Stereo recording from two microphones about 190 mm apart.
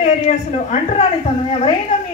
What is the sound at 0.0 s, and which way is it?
A woman's voice, 35° left (ahead or behind).